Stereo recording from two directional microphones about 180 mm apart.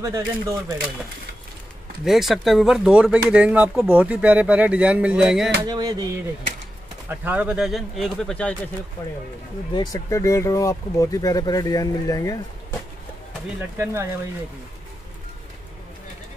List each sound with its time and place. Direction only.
0.0 s speech: 15° right (ahead or behind)
2.0 s speech: centre (ahead or behind)
5.6 s a sound: 20° right (ahead or behind)
7.1 s speech: 10° right (ahead or behind)
9.8 s speech: 20° left (ahead or behind)
13.6 s speech: 15° right (ahead or behind)